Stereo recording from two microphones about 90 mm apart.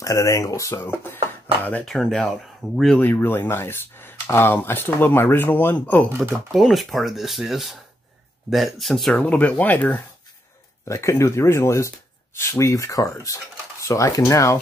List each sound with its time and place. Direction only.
0.0 s speech: 35° left (ahead or behind); by 1.9 s 20° left (ahead or behind)
1.9 s speech: 5° left (ahead or behind)
3.0 s speech: 20° left (ahead or behind)
6.3 s speech: centre (ahead or behind)
9.1 s speech: 15° left (ahead or behind)
10.9 s speech: 30° left (ahead or behind)